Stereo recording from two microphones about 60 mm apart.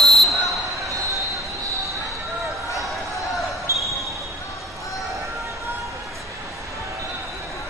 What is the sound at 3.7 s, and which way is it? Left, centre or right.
Basketball bounce, right.